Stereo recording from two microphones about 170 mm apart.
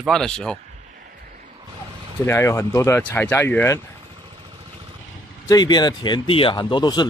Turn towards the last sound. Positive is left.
turn(degrees=25)  # may be behind; listen again after turning